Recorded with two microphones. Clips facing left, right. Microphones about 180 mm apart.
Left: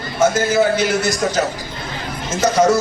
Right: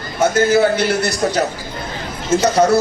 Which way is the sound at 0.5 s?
65° right (ahead or behind).